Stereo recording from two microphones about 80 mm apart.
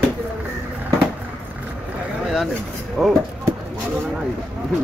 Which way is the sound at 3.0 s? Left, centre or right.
Centre.